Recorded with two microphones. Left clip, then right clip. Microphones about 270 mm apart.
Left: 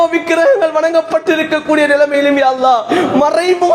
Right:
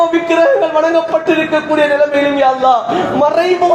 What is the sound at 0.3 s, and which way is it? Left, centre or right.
A man's voice, left.